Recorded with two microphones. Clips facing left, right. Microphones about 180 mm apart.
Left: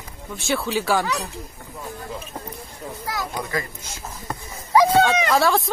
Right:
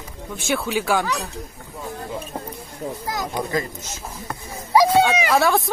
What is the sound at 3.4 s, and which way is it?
Speech, 20° right (ahead or behind).